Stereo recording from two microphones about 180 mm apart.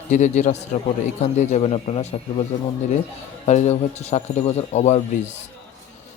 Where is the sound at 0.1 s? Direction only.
40° left (ahead or behind).